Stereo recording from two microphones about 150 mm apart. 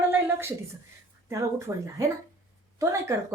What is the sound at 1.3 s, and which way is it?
A woman's voice, 20° right (ahead or behind).